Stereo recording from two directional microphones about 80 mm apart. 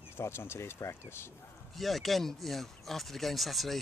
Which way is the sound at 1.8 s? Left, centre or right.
Centre.